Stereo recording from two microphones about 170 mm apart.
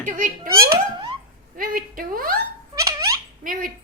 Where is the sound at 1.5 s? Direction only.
55° right (ahead or behind).